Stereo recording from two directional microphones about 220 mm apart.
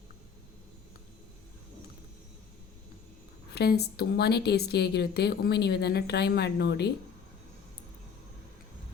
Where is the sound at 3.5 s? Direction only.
45° left (ahead or behind).